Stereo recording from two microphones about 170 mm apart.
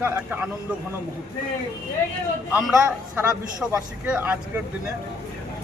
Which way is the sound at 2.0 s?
15° left (ahead or behind).